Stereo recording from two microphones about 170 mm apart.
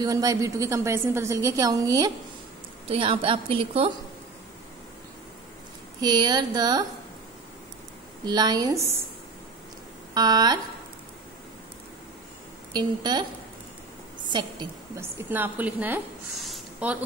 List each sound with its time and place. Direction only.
0.0 s a woman's voice: 20° right (ahead or behind)
5.9 s a woman's voice: 25° right (ahead or behind)
8.3 s a woman's voice: 25° right (ahead or behind)
10.1 s a woman's voice: 25° right (ahead or behind)
12.7 s a woman's voice: 25° right (ahead or behind)
14.3 s a woman's voice: 25° right (ahead or behind)
15.0 s a woman's voice: 15° right (ahead or behind)
16.4 s a sound: 5° right (ahead or behind)